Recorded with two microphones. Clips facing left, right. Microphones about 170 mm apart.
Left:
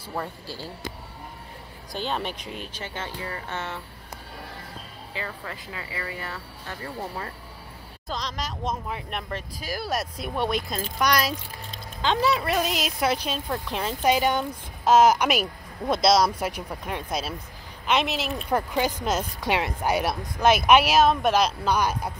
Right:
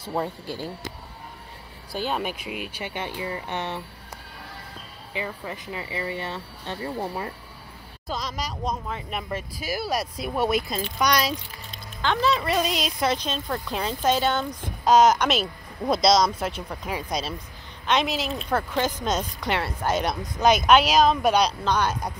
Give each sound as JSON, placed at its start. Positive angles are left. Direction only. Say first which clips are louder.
{"t": 0.0, "sound": "speech", "louder": "right 4 dB", "side_deg": -20}
{"t": 1.9, "sound": "speech", "louder": "right 2 dB", "side_deg": -10}
{"t": 5.1, "sound": "speech", "louder": "right 3 dB", "side_deg": -15}
{"t": 8.1, "sound": "speech", "louder": "right 1 dB", "side_deg": -5}
{"t": 12.0, "sound": "speech", "louder": "even", "side_deg": 15}
{"t": 12.4, "sound": "speech", "louder": "right 1 dB", "side_deg": 0}
{"t": 14.0, "sound": "speech", "louder": "left 1 dB", "side_deg": 10}
{"t": 18.3, "sound": "speech", "louder": "even", "side_deg": 15}